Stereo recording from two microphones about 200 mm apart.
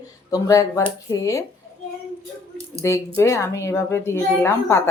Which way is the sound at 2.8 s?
15° left (ahead or behind).